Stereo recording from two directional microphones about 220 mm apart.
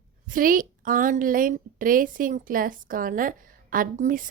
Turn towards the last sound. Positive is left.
turn(degrees=-40)  # may be behind; listen again after turning